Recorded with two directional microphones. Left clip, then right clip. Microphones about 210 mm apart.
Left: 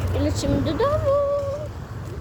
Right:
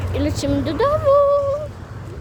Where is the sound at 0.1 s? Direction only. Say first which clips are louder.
Right 3 dB; 20° right (ahead or behind).